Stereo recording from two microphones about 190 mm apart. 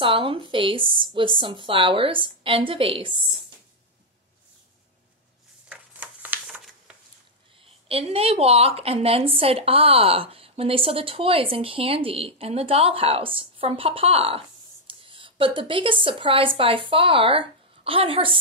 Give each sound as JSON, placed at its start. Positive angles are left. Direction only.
{"t": 0.0, "sound": "a woman's voice", "side_deg": -25}
{"t": 5.7, "sound": "a sound", "side_deg": -10}
{"t": 7.6, "sound": "a woman's voice", "side_deg": -30}